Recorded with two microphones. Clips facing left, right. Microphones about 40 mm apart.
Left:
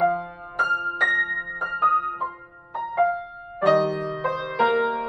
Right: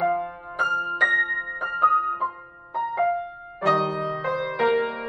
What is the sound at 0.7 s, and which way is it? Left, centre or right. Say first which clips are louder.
Music: right 4 dB; right.